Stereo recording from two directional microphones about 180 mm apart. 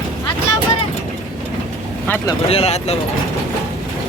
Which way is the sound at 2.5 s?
35° left (ahead or behind).